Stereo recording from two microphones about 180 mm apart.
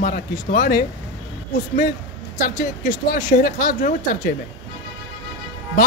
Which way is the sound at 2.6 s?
45° left (ahead or behind).